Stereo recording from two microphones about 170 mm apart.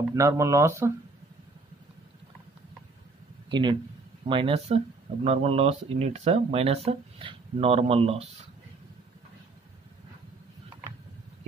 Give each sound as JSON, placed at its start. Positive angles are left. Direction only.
{"t": 0.1, "sound": "speech", "side_deg": -15}
{"t": 3.4, "sound": "speech", "side_deg": -25}